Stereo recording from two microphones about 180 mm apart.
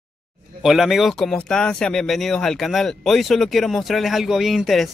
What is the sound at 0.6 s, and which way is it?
Speech, centre (ahead or behind).